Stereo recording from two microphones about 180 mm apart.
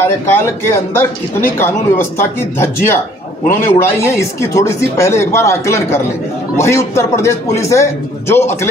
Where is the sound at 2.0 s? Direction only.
15° left (ahead or behind).